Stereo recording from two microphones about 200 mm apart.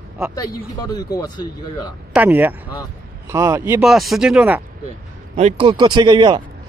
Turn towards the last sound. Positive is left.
turn(degrees=-25)  # may be behind; listen again after turning